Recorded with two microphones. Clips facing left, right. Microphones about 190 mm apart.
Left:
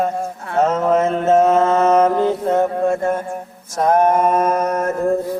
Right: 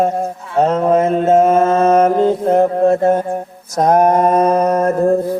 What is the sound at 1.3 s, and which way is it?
Mantra, 25° right (ahead or behind).